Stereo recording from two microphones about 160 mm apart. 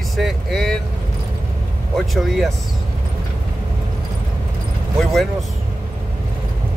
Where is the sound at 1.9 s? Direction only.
Centre (ahead or behind).